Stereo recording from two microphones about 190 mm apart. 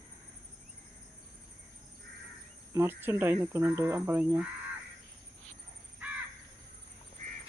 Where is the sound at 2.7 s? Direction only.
10° right (ahead or behind).